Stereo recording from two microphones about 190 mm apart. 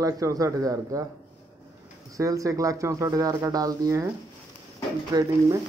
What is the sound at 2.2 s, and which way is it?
Speech, 15° right (ahead or behind).